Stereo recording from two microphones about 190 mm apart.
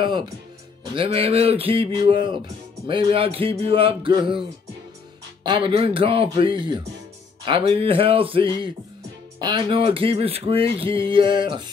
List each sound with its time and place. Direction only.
0.0 s speech: 25° right (ahead or behind)